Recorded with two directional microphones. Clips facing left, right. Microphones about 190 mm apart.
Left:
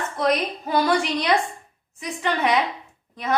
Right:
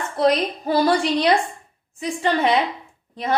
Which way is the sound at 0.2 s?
30° right (ahead or behind).